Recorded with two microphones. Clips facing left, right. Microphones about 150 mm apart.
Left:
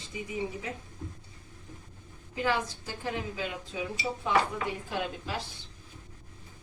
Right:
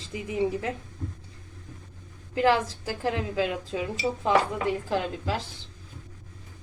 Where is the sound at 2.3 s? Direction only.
90° right.